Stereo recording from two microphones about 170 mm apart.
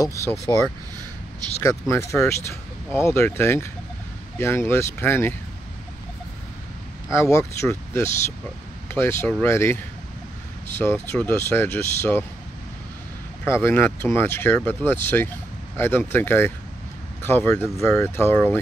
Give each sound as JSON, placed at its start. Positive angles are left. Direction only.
{"t": 0.0, "sound": "speech", "side_deg": 15}
{"t": 7.1, "sound": "speech", "side_deg": 15}
{"t": 10.8, "sound": "speech", "side_deg": 10}
{"t": 13.4, "sound": "speech", "side_deg": 15}